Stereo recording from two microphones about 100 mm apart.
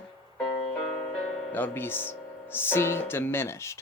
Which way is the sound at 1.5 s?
20° left (ahead or behind).